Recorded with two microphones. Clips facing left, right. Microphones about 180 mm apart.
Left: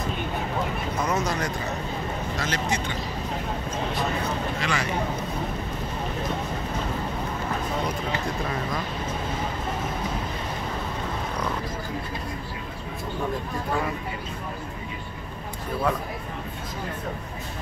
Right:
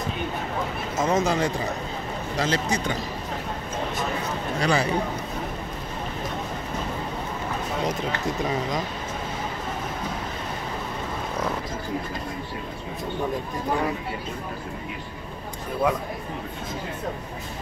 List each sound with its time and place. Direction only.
1.0 s speech: 25° right (ahead or behind)
4.6 s speech: 35° right (ahead or behind)